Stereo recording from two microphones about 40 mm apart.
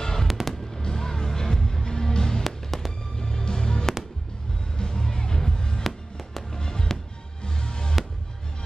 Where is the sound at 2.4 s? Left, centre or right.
Centre.